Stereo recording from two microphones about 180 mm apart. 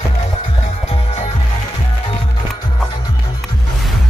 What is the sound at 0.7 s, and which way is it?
Music, 30° left (ahead or behind).